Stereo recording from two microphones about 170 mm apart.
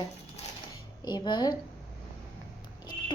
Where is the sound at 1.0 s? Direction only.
25° left (ahead or behind).